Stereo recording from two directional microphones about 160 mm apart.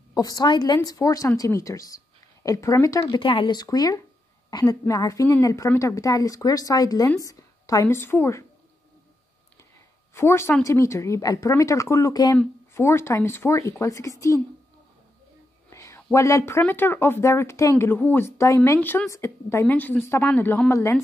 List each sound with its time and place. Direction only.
0.1 s a woman's voice: 25° left (ahead or behind)
10.1 s a woman's voice: 15° left (ahead or behind)
15.7 s speech: 15° left (ahead or behind)